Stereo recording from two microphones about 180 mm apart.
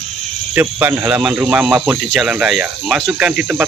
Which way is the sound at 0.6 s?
10° right (ahead or behind).